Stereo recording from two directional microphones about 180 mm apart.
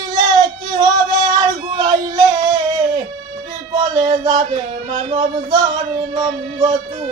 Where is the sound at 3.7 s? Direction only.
25° right (ahead or behind).